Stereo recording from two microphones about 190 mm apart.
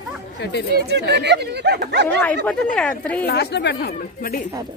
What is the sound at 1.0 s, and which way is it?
Speech, 65° right (ahead or behind).